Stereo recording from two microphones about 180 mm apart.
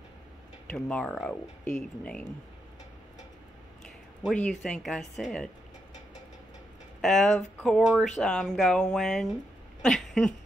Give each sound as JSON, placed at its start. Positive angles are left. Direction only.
{"t": 0.7, "sound": "speech", "side_deg": 5}
{"t": 3.8, "sound": "speech", "side_deg": 5}
{"t": 7.0, "sound": "speech", "side_deg": 0}
{"t": 9.8, "sound": "a sound", "side_deg": 0}